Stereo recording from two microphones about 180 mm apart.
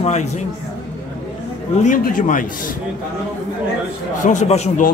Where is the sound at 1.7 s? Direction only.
45° left (ahead or behind).